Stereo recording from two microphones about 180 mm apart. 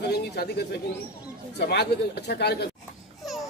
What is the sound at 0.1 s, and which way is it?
A man's voice, 60° left (ahead or behind).